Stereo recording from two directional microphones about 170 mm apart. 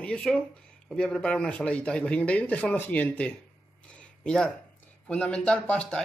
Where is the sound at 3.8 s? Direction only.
5° left (ahead or behind).